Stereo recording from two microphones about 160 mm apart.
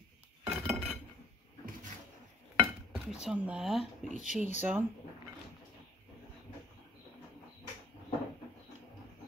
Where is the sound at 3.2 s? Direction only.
5° right (ahead or behind).